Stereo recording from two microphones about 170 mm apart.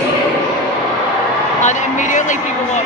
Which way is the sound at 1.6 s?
45° left (ahead or behind).